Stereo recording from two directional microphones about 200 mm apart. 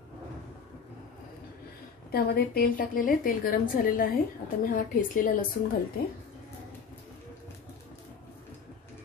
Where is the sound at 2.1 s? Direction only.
50° left (ahead or behind).